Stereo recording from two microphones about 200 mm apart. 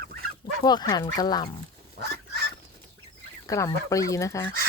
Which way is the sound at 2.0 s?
55° right (ahead or behind).